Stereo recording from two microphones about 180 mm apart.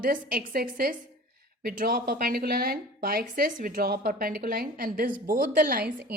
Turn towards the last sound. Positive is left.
turn(degrees=-55)  # may be behind; listen again after turning